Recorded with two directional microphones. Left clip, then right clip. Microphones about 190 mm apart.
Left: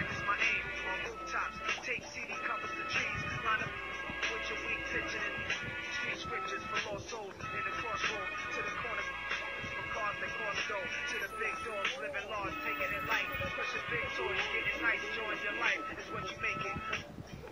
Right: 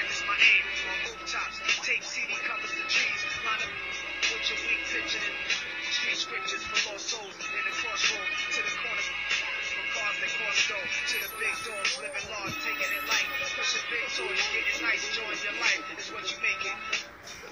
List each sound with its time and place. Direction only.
0.0 s music: 15° right (ahead or behind)
7.5 s speech: 15° right (ahead or behind)